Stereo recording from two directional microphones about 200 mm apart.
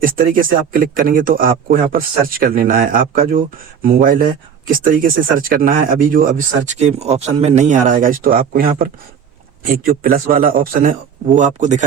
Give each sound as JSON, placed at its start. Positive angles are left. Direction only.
{"t": 0.0, "sound": "speech", "side_deg": -45}